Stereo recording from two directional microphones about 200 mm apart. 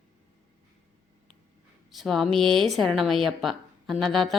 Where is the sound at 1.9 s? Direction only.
Centre (ahead or behind).